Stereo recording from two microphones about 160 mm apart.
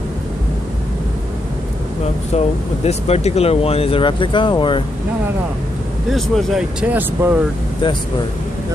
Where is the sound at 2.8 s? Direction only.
40° left (ahead or behind).